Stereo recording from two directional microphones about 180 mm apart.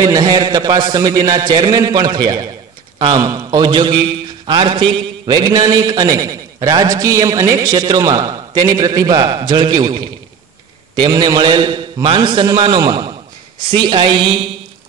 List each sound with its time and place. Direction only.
0.0 s a man's voice: 20° right (ahead or behind)